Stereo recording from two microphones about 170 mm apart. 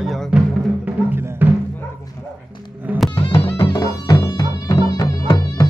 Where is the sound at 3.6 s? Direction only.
20° left (ahead or behind).